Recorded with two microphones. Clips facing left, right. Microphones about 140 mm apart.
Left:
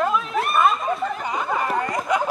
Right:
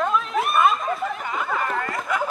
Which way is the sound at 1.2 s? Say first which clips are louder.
Left 2 dB; 20° left (ahead or behind).